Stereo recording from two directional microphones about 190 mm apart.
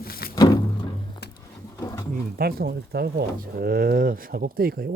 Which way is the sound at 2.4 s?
55° right (ahead or behind).